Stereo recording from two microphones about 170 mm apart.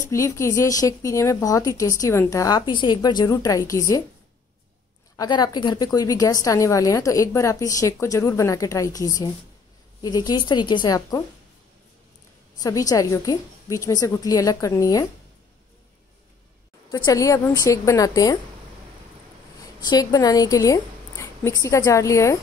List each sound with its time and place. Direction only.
0.0 s a woman's voice: 15° left (ahead or behind)
5.1 s a woman's voice: 20° left (ahead or behind)
12.5 s a woman's voice: 20° left (ahead or behind)
16.9 s a woman's voice: 20° left (ahead or behind)
19.6 s a woman's voice: 25° left (ahead or behind)